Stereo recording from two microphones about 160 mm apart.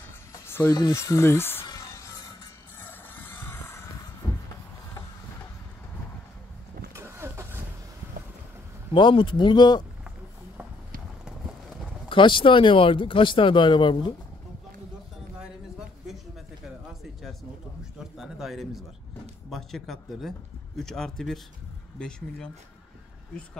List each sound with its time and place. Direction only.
0.3 s music: 15° left (ahead or behind)
0.7 s speech: 20° left (ahead or behind)
1.7 s music: 20° left (ahead or behind)
2.8 s a sound: 10° left (ahead or behind)
7.0 s vehicle: 15° right (ahead or behind)
8.9 s speech: 30° left (ahead or behind)
12.1 s speech: 30° left (ahead or behind)
17.0 s a sound: centre (ahead or behind)
17.9 s speech: 5° right (ahead or behind)